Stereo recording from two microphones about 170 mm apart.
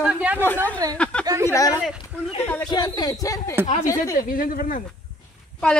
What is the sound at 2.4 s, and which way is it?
Speech, 10° left (ahead or behind).